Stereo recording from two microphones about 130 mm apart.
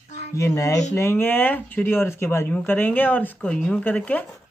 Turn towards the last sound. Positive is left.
turn(degrees=10)  # may be behind; listen again after turning